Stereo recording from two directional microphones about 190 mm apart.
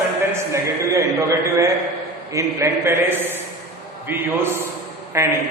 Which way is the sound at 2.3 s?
15° right (ahead or behind).